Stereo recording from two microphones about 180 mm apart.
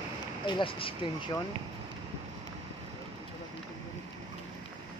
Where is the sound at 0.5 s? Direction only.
30° left (ahead or behind).